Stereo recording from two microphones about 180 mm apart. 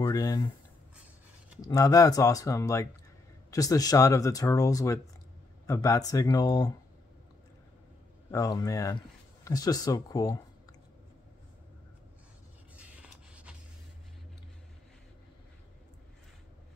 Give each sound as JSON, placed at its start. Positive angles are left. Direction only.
{"t": 0.0, "sound": "speech", "side_deg": 20}
{"t": 1.6, "sound": "speech", "side_deg": 20}
{"t": 8.3, "sound": "speech", "side_deg": 20}
{"t": 12.7, "sound": "a sound", "side_deg": -5}